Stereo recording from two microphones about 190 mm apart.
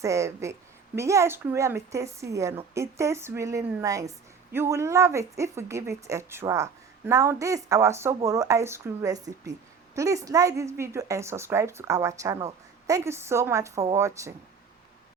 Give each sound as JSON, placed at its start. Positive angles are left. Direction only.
{"t": 0.0, "sound": "a woman's voice", "side_deg": -15}